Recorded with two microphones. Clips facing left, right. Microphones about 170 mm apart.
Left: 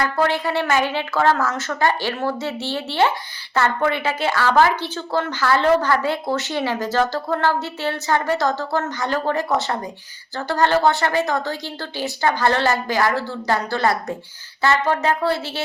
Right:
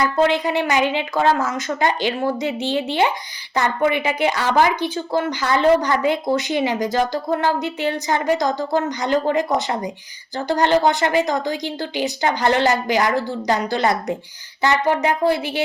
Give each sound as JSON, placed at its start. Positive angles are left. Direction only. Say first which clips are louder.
{"t": 0.0, "sound": "a woman's voice", "louder": "right 3 dB", "side_deg": -20}